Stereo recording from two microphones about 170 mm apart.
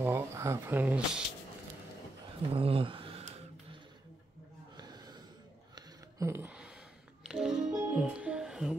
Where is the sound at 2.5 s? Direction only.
35° right (ahead or behind).